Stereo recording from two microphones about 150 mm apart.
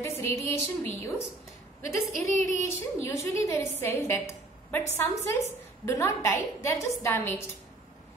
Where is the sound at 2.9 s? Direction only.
20° left (ahead or behind).